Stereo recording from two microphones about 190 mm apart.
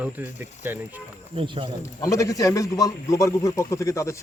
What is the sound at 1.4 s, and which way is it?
Speech, 25° right (ahead or behind).